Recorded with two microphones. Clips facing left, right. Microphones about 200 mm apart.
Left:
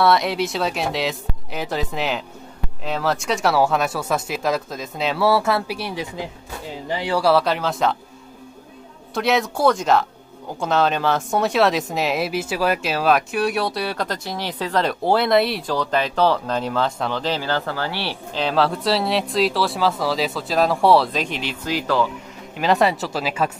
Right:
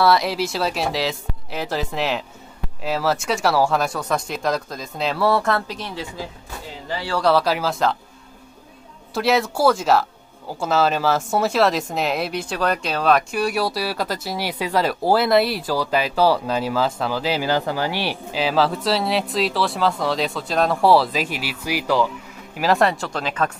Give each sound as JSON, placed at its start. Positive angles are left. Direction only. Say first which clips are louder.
{"t": 0.0, "sound": "a woman's voice", "louder": "even", "side_deg": 0}
{"t": 7.2, "sound": "a woman's voice", "louder": "right 1 dB", "side_deg": 0}
{"t": 9.1, "sound": "a woman's voice", "louder": "right 1 dB", "side_deg": 0}
{"t": 22.6, "sound": "a woman's voice", "louder": "even", "side_deg": 0}